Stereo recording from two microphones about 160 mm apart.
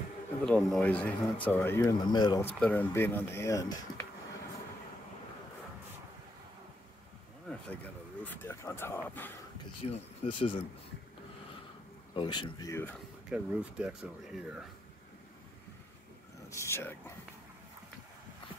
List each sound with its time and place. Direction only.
0.5 s speech: 5° left (ahead or behind); by 2.4 s 25° left (ahead or behind)
2.4 s speech: 10° left (ahead or behind)
8.2 s speech: 10° left (ahead or behind)
9.8 s speech: 35° left (ahead or behind)
12.2 s speech: 30° left (ahead or behind)
13.3 s speech: 5° right (ahead or behind)
16.4 s speech: 15° left (ahead or behind)